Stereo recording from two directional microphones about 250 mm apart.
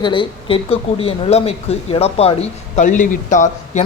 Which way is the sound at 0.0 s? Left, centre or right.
Centre.